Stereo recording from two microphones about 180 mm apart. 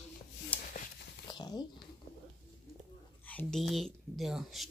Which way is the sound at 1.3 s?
25° left (ahead or behind).